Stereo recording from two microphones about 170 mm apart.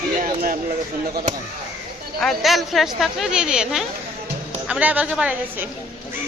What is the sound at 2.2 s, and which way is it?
A woman's voice, centre (ahead or behind).